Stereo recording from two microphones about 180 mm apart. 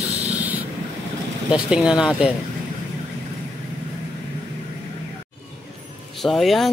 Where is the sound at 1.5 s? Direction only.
5° right (ahead or behind).